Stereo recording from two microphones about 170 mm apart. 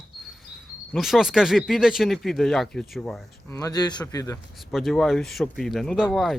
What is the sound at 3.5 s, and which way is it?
Speech, 20° left (ahead or behind).